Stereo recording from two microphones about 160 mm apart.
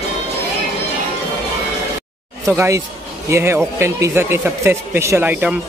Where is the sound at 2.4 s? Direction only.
20° right (ahead or behind).